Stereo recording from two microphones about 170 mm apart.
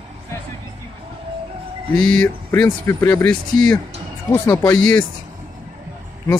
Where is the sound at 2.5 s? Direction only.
15° left (ahead or behind).